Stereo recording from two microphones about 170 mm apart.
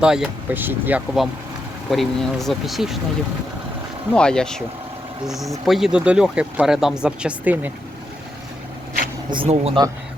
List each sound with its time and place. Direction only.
0.0 s speech: 5° right (ahead or behind)
4.1 s speech: 5° left (ahead or behind)
9.3 s speech: 35° right (ahead or behind)